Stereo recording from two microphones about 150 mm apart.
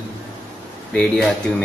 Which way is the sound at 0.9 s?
5° left (ahead or behind).